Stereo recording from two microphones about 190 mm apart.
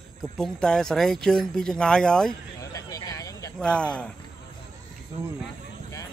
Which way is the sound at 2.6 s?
15° left (ahead or behind).